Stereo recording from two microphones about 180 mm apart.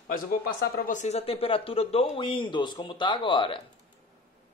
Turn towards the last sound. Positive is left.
turn(degrees=25)  # may be behind; listen again after turning